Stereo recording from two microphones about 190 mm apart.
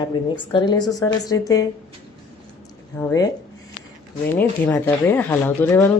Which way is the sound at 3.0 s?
15° left (ahead or behind).